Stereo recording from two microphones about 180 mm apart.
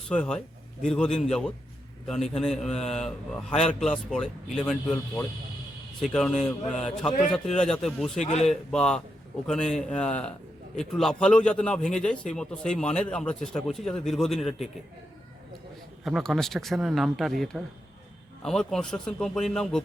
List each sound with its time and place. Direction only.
0.1 s a man's voice: 5° left (ahead or behind)
6.0 s a man's voice: 5° left (ahead or behind)
8.2 s a man's voice: 40° left (ahead or behind)
8.4 s a man's voice: 5° left (ahead or behind)
16.0 s a man's voice: centre (ahead or behind)